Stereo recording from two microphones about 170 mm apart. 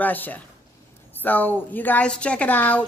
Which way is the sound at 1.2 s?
10° left (ahead or behind).